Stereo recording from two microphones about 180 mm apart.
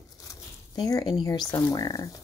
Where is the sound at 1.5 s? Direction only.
20° left (ahead or behind).